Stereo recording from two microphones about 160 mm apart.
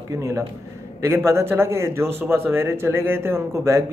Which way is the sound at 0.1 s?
20° right (ahead or behind).